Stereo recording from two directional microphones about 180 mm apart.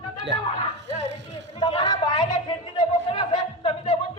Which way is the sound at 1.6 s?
25° left (ahead or behind).